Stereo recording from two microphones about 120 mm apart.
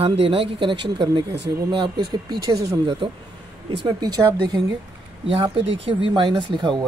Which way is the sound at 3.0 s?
45° right (ahead or behind).